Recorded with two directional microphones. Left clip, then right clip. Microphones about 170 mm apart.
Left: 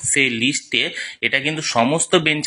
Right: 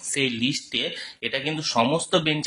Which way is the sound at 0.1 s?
10° left (ahead or behind).